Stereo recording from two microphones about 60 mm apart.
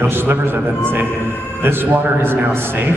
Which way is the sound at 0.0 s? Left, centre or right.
Right.